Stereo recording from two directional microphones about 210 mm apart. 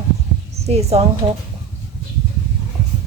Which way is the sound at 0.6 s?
30° right (ahead or behind).